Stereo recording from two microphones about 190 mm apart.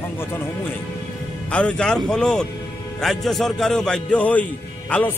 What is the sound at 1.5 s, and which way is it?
A man's voice, 5° left (ahead or behind).